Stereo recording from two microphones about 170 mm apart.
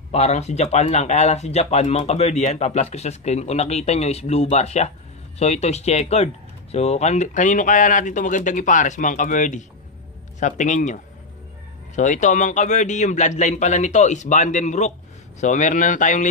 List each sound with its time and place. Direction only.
0.1 s speech: 40° left (ahead or behind)